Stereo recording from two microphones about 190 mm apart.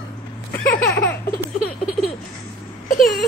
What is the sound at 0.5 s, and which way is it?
Laughter, 10° left (ahead or behind).